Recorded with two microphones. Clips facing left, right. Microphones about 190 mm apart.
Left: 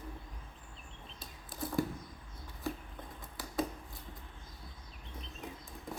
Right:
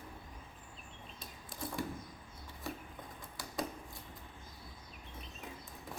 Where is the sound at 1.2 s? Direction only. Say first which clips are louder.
Left 3 dB; centre (ahead or behind).